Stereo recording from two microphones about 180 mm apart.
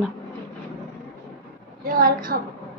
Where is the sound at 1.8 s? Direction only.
55° right (ahead or behind).